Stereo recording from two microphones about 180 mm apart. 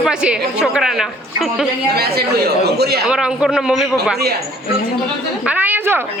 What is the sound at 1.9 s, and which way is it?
Speech, 60° right (ahead or behind).